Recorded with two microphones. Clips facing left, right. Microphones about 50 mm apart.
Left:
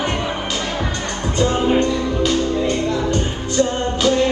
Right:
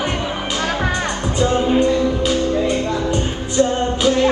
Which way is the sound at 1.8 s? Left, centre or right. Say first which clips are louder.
Right 2 dB; centre.